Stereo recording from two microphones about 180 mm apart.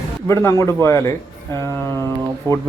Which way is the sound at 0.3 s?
15° left (ahead or behind).